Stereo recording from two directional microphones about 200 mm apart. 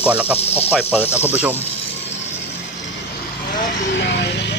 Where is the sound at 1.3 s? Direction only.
10° right (ahead or behind).